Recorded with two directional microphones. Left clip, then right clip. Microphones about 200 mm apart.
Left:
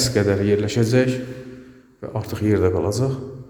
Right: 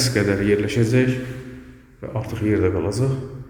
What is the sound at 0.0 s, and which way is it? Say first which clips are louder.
A man's voice: left 1 dB; 15° left (ahead or behind).